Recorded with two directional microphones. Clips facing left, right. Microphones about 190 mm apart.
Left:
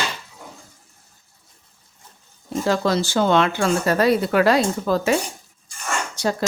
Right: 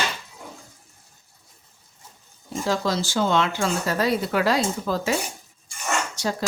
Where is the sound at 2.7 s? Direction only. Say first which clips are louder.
Left 4 dB; 60° left (ahead or behind).